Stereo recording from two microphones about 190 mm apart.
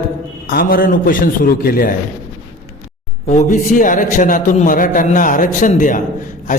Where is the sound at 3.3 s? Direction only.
40° left (ahead or behind).